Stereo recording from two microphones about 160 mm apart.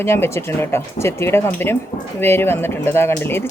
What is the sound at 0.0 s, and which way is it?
Speech, 15° left (ahead or behind).